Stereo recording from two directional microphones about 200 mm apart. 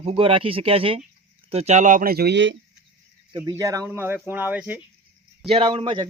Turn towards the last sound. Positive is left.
turn(degrees=-25)  # may be behind; listen again after turning